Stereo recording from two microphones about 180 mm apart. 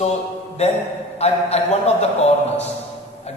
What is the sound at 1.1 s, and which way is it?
Speech, 35° left (ahead or behind).